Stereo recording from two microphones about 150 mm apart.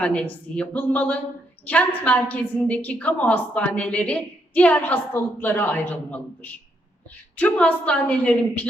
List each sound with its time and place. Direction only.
0.0 s a woman's voice: 10° left (ahead or behind)